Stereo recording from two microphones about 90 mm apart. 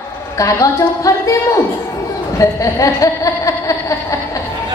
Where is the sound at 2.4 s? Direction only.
35° left (ahead or behind).